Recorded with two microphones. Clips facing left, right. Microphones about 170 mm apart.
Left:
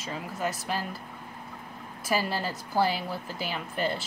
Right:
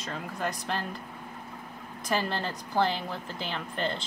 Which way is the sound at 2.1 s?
5° left (ahead or behind).